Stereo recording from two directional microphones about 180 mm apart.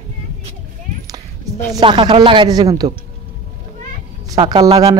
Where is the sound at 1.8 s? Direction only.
25° right (ahead or behind).